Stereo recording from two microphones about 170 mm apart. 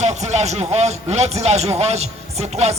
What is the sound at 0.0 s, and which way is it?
A man's voice, 40° right (ahead or behind).